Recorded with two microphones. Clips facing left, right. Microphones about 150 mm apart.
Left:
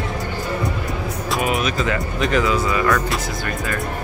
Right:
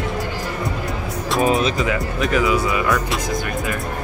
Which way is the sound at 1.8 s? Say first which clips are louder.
Right 1 dB; 5° right (ahead or behind).